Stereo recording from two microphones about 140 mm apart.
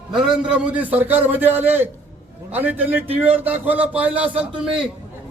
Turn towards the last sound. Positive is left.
turn(degrees=-5)  # may be behind; listen again after turning